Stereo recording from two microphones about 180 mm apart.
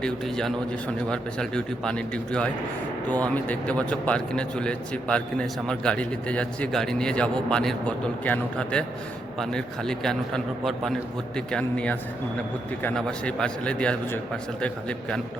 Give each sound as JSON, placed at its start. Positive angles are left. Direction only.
{"t": 0.0, "sound": "a man's voice", "side_deg": 5}